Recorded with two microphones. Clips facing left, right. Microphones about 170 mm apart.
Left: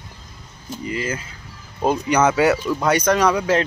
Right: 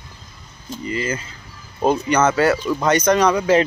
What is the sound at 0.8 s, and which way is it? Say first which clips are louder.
Speech: right 2 dB; 5° left (ahead or behind).